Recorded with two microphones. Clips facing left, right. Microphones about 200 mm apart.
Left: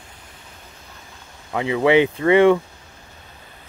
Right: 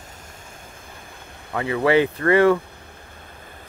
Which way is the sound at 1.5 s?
20° left (ahead or behind).